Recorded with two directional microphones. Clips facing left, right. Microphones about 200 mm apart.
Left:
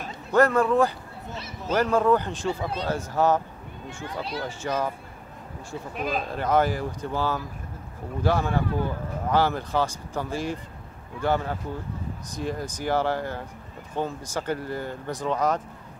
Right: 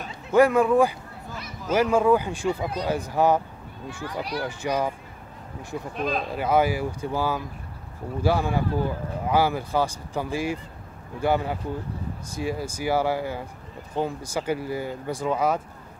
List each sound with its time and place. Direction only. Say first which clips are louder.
0.3 s speech: right 2 dB; 10° right (ahead or behind)
3.8 s speech: right 2 dB; 25° left (ahead or behind)
4.5 s speech: right 2 dB; 15° right (ahead or behind)
5.9 s speech: right 1 dB; 5° left (ahead or behind)
6.3 s speech: right 1 dB; 10° right (ahead or behind)